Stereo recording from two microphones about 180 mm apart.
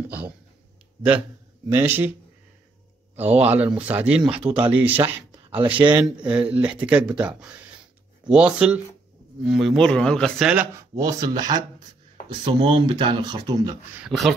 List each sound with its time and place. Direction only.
1.7 s speech: 10° right (ahead or behind)
3.5 s a man's voice: 10° right (ahead or behind)
10.5 s speech: 10° right (ahead or behind)
11.1 s speech: 20° right (ahead or behind)
14.0 s a man's voice: centre (ahead or behind)